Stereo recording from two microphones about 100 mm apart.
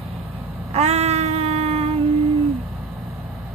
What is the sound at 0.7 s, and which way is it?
Child singing, 90° right.